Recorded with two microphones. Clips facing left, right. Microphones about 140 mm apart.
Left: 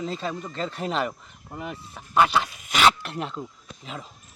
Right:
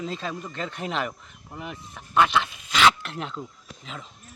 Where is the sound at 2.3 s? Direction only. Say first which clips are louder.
Even; 35° left (ahead or behind).